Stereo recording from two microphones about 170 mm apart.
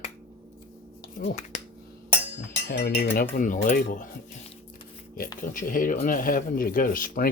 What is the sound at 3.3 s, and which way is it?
Cutlery, 50° left (ahead or behind).